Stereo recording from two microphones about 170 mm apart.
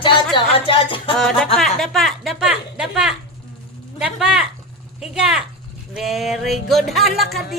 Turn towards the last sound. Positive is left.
turn(degrees=0)  # may be behind; listen again after turning